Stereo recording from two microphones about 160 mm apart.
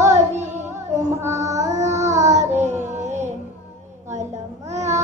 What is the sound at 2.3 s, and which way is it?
Child singing, 45° right (ahead or behind).